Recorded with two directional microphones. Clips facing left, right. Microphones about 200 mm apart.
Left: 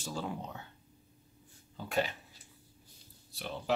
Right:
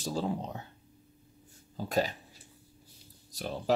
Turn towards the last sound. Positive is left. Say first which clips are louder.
# right 5 dB
turn(degrees=-40)  # may be behind; listen again after turning